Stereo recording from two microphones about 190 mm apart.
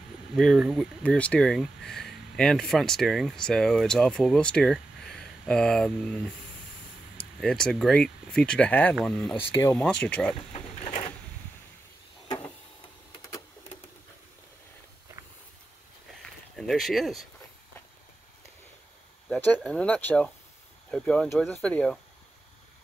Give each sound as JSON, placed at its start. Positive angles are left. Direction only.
{"t": 0.4, "sound": "speech", "side_deg": 0}
{"t": 7.3, "sound": "speech", "side_deg": 5}
{"t": 10.5, "sound": "a sound", "side_deg": 30}
{"t": 16.5, "sound": "speech", "side_deg": 0}
{"t": 19.2, "sound": "speech", "side_deg": 0}